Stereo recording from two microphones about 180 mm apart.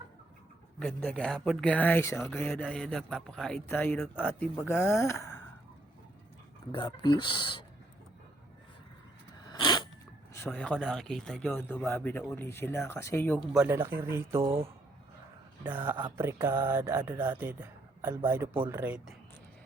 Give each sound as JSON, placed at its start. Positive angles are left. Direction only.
{"t": 0.8, "sound": "a man's voice", "side_deg": 5}
{"t": 6.7, "sound": "speech", "side_deg": 25}
{"t": 9.5, "sound": "a sound", "side_deg": 25}
{"t": 10.3, "sound": "a man's voice", "side_deg": 10}
{"t": 13.7, "sound": "speech", "side_deg": -10}
{"t": 14.4, "sound": "speech", "side_deg": -30}
{"t": 15.6, "sound": "speech", "side_deg": -10}
{"t": 16.0, "sound": "mantra", "side_deg": -25}
{"t": 16.2, "sound": "speech", "side_deg": -15}